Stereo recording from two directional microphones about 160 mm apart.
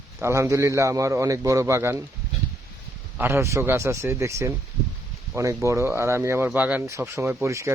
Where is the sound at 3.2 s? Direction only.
15° right (ahead or behind).